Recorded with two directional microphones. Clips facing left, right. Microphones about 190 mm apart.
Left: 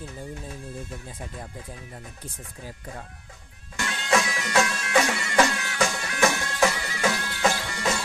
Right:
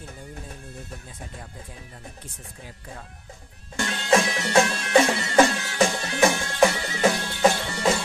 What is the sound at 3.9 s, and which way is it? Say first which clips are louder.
Music: right 3 dB; 35° right (ahead or behind).